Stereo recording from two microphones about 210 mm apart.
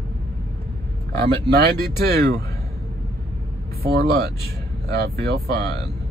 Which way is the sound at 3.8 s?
45° right (ahead or behind).